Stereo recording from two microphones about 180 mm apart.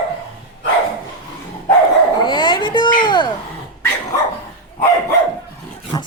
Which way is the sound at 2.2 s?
25° left (ahead or behind).